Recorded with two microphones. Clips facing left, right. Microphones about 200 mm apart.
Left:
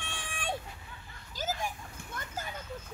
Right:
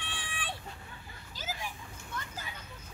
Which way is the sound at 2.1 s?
45° left (ahead or behind).